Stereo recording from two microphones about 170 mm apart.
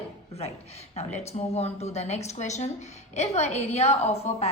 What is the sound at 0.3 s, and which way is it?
Speech, 40° left (ahead or behind).